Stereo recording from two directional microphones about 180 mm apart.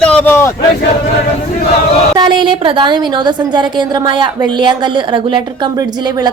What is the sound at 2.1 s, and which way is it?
A woman's voice, 25° right (ahead or behind).